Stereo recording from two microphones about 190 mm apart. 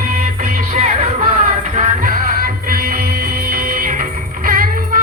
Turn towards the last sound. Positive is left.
turn(degrees=-50)  # may be behind; listen again after turning